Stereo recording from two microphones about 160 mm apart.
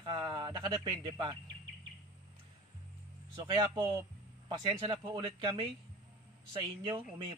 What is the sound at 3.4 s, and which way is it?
A man's voice, 30° right (ahead or behind).